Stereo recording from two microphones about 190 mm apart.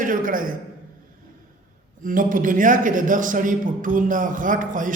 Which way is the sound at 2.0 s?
45° right (ahead or behind).